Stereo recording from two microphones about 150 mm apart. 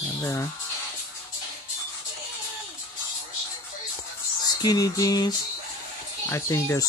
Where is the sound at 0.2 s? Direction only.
20° left (ahead or behind).